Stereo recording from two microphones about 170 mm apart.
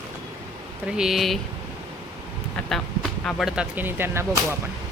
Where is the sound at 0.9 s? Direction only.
Centre (ahead or behind).